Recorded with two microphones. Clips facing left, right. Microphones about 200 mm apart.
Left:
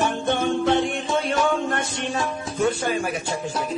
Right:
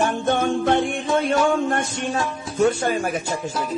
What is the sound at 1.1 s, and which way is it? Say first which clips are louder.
Speech: right 4 dB; 50° right (ahead or behind).